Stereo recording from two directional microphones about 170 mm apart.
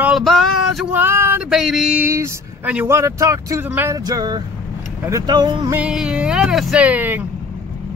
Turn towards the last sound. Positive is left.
turn(degrees=-10)  # may be behind; listen again after turning